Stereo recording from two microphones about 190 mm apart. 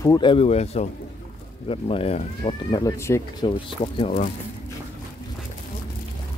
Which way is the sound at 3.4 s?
25° left (ahead or behind).